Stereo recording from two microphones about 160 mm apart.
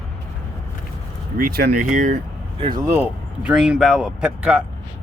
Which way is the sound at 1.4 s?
70° right (ahead or behind).